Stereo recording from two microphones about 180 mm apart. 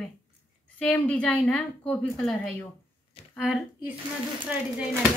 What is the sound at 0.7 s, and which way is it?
A woman's voice, 10° left (ahead or behind).